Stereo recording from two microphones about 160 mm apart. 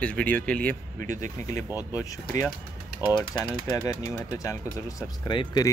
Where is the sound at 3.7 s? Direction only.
20° left (ahead or behind).